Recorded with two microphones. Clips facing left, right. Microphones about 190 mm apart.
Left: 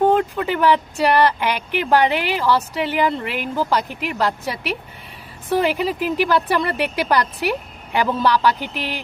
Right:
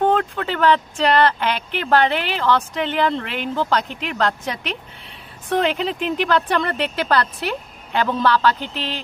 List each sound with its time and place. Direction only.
0.0 s speech: 10° left (ahead or behind)